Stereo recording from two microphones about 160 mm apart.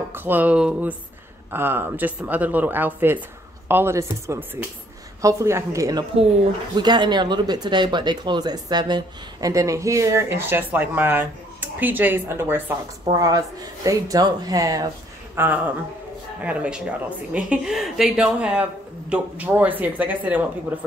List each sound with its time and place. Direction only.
0.1 s speech: 10° right (ahead or behind)
13.0 s speech: 25° right (ahead or behind)